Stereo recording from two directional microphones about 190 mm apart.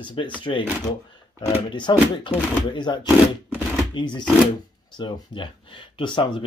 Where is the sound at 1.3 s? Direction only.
25° left (ahead or behind).